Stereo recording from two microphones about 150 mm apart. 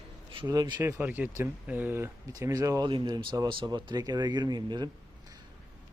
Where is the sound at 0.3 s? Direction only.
30° right (ahead or behind).